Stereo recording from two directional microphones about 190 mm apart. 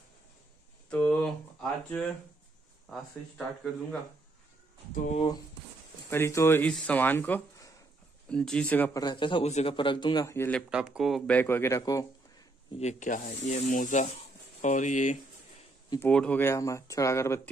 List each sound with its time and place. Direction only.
0.8 s a sound: 5° left (ahead or behind)
2.9 s speech: 5° left (ahead or behind)
5.0 s speech: 35° left (ahead or behind)
6.0 s speech: 15° left (ahead or behind)
9.0 s speech: 25° left (ahead or behind)
10.7 s speech: 5° right (ahead or behind); by 12.1 s 20° left (ahead or behind)
12.7 s speech: 40° left (ahead or behind)
16.1 s speech: 5° left (ahead or behind)